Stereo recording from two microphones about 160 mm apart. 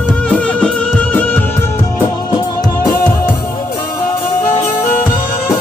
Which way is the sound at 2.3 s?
25° left (ahead or behind).